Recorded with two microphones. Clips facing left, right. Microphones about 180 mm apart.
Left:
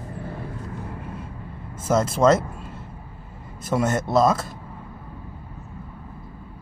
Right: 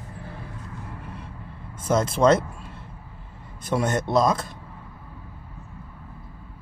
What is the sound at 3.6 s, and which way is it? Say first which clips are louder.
Speech: left 1 dB; 5° left (ahead or behind).